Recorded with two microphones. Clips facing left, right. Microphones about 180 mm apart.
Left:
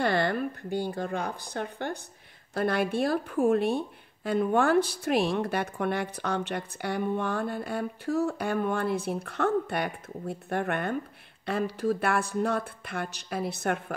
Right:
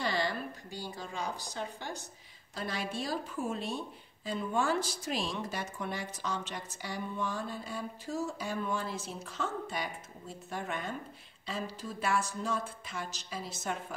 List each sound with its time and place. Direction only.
0.0 s speech: 55° left (ahead or behind)